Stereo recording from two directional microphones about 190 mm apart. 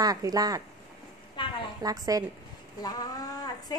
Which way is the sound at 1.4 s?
25° left (ahead or behind).